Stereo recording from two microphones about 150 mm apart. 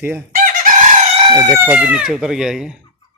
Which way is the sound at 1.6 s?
10° right (ahead or behind).